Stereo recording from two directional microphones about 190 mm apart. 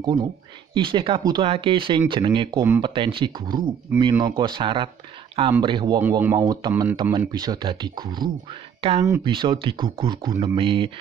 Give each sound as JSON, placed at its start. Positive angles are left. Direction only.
{"t": 0.0, "sound": "speech", "side_deg": -25}
{"t": 5.9, "sound": "speech", "side_deg": -10}
{"t": 6.7, "sound": "speech", "side_deg": -10}
{"t": 7.0, "sound": "speech", "side_deg": -20}